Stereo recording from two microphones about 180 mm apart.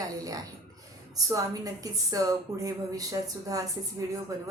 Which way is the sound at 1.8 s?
20° right (ahead or behind).